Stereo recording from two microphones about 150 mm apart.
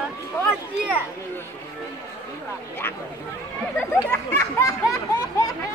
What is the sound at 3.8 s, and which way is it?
Speech, 15° left (ahead or behind).